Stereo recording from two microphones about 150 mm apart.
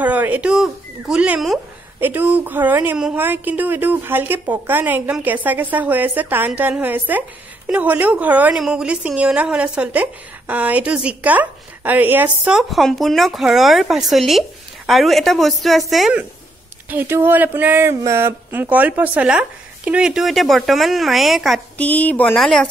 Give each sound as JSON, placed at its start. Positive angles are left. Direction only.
{"t": 0.0, "sound": "a woman's voice", "side_deg": -10}
{"t": 16.9, "sound": "a woman's voice", "side_deg": -15}